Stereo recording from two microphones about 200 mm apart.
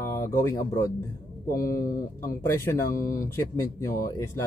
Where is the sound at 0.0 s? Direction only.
15° left (ahead or behind).